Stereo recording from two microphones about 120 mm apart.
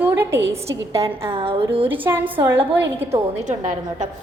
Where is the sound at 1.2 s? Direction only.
50° right (ahead or behind).